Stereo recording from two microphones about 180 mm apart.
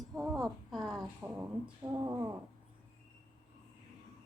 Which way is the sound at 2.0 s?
20° right (ahead or behind).